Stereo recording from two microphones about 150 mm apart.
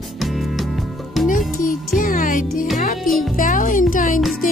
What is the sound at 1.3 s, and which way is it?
Music, 60° left (ahead or behind).